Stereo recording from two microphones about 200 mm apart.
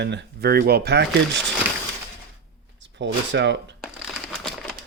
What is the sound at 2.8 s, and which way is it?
Speech, 65° right (ahead or behind).